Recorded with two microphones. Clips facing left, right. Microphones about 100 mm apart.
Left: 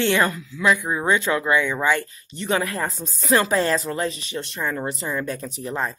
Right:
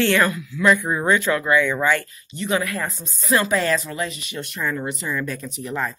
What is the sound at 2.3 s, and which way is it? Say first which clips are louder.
Speech: even; 35° left (ahead or behind).